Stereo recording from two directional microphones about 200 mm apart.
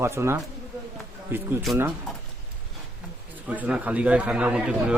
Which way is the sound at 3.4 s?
5° right (ahead or behind).